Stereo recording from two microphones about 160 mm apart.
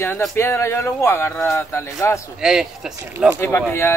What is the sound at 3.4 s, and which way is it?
Speech, 15° left (ahead or behind).